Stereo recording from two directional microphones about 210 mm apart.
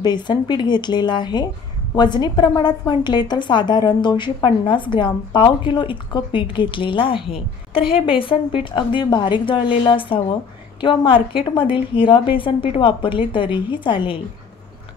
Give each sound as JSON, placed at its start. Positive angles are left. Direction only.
{"t": 0.0, "sound": "a woman's voice", "side_deg": 20}